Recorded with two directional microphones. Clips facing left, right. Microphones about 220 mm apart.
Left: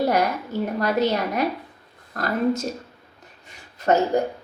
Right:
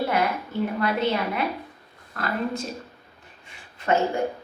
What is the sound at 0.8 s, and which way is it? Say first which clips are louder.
Speech: left 4 dB; 40° left (ahead or behind).